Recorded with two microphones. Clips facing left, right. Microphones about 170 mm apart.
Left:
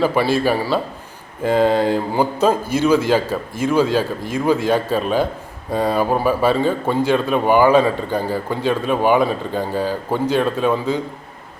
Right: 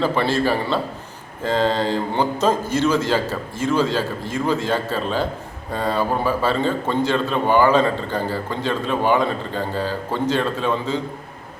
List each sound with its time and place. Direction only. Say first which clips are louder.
0.0 s speech: left 3 dB; 10° left (ahead or behind)